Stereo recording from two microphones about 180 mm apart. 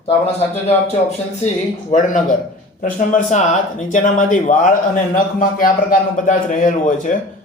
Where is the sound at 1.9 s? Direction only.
45° left (ahead or behind).